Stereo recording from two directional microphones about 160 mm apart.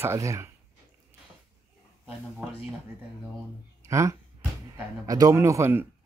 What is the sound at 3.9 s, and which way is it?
Speech, 20° right (ahead or behind).